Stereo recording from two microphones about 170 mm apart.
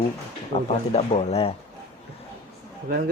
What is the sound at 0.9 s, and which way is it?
Speech, 40° left (ahead or behind).